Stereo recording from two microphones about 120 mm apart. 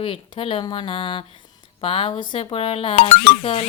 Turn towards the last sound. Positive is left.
turn(degrees=50)  # may be behind; listen again after turning